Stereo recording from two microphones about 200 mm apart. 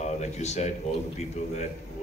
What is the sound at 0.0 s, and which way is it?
Speech, 35° left (ahead or behind).